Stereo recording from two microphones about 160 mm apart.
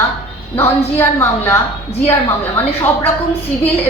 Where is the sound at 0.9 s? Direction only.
15° left (ahead or behind).